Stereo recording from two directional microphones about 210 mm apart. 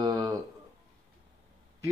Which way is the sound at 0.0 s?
20° right (ahead or behind).